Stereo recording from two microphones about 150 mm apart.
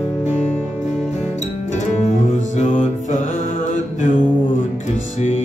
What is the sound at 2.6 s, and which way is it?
Music, 55° left (ahead or behind).